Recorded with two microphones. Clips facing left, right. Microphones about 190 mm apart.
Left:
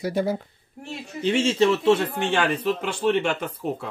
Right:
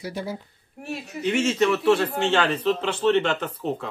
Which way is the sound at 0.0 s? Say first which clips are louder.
Left 7 dB; 50° left (ahead or behind).